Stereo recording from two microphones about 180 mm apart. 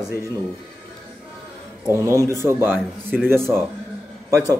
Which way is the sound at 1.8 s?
15° right (ahead or behind).